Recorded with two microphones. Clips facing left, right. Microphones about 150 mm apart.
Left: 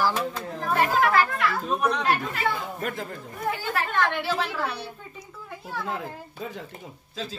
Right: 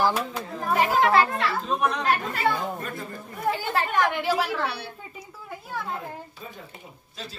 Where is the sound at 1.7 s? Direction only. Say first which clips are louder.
Even; centre (ahead or behind).